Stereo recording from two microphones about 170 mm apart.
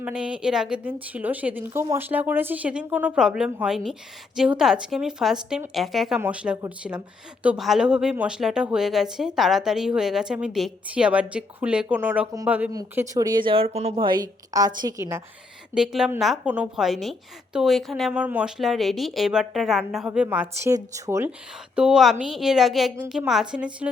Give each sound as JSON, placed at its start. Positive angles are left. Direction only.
{"t": 0.0, "sound": "a woman's voice", "side_deg": -5}
{"t": 12.7, "sound": "a woman's voice", "side_deg": -20}
{"t": 15.7, "sound": "a woman's voice", "side_deg": -5}
{"t": 21.8, "sound": "a woman's voice", "side_deg": -5}